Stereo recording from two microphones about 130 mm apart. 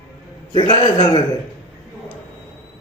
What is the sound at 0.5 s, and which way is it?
Speech, 40° left (ahead or behind).